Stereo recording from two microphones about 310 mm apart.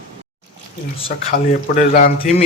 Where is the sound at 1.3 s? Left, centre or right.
Left.